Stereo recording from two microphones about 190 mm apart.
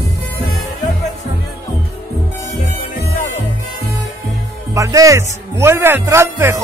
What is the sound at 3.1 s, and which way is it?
Music, 45° left (ahead or behind).